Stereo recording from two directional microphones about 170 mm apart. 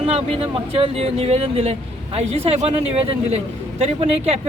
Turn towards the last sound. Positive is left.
turn(degrees=-35)  # may be behind; listen again after turning